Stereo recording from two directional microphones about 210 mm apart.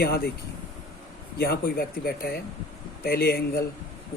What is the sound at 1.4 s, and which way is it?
Speech, 45° left (ahead or behind).